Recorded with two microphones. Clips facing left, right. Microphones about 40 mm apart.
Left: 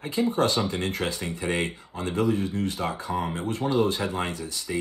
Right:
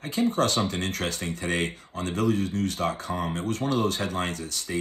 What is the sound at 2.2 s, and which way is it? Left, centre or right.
Speech, right.